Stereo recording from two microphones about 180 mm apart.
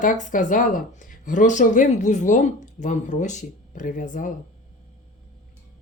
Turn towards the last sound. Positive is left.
turn(degrees=45)  # may be behind; listen again after turning